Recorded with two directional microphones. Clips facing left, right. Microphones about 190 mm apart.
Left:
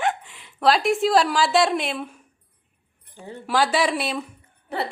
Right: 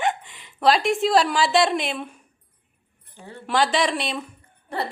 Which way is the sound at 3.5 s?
5° left (ahead or behind).